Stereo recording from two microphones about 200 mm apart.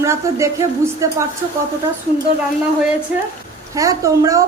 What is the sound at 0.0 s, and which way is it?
Speech, 15° right (ahead or behind).